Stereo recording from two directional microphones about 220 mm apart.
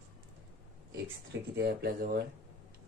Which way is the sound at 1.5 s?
50° right (ahead or behind).